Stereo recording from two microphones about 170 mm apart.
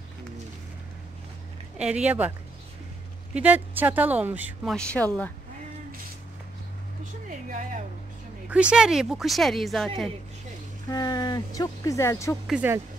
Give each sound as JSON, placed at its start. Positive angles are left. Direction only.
{"t": 1.8, "sound": "a woman's voice", "side_deg": -5}
{"t": 3.3, "sound": "a woman's voice", "side_deg": -10}
{"t": 4.7, "sound": "speech", "side_deg": 5}
{"t": 7.2, "sound": "a sound", "side_deg": -50}
{"t": 8.5, "sound": "speech", "side_deg": -5}
{"t": 10.9, "sound": "speech", "side_deg": 25}
{"t": 12.4, "sound": "a woman's voice", "side_deg": -10}